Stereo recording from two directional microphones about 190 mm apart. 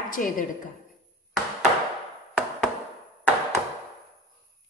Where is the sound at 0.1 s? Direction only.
45° left (ahead or behind).